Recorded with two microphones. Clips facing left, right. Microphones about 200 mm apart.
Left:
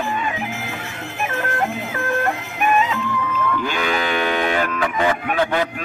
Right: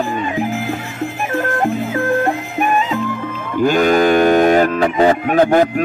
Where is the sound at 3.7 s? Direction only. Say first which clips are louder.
Right 10 dB; 45° right (ahead or behind).